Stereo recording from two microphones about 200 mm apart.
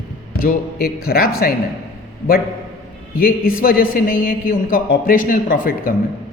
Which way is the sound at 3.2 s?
45° left (ahead or behind).